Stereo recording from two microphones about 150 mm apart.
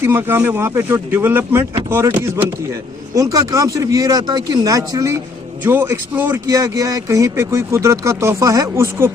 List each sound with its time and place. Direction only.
0.0 s speech: 15° right (ahead or behind)